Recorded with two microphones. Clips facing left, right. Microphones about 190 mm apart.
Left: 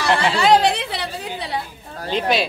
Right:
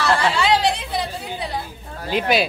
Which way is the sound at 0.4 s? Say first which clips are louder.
Left 3 dB; 55° left (ahead or behind).